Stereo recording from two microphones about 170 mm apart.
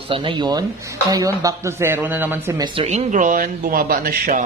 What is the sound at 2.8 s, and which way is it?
Speech, 45° right (ahead or behind).